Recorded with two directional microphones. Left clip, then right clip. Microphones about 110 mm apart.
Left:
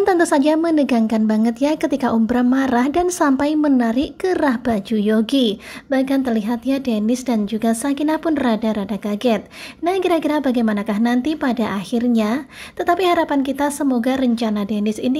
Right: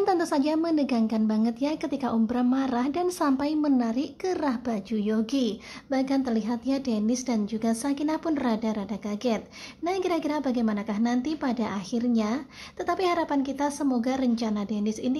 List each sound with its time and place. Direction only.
0.0 s a woman's voice: 40° left (ahead or behind)
5.9 s a woman's voice: 30° left (ahead or behind)
9.8 s a woman's voice: 40° left (ahead or behind)